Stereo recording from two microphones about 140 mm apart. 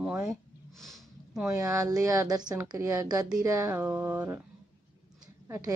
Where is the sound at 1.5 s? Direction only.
25° right (ahead or behind).